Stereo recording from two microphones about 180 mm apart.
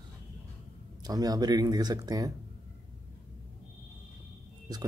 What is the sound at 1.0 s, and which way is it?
Speech, 20° right (ahead or behind).